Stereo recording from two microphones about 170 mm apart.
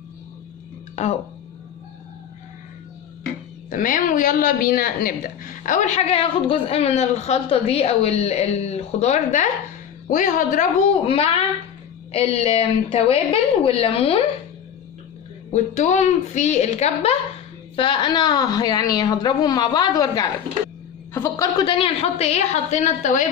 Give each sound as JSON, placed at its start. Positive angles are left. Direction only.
{"t": 3.7, "sound": "a woman's voice", "side_deg": 55}
{"t": 15.5, "sound": "a woman's voice", "side_deg": 45}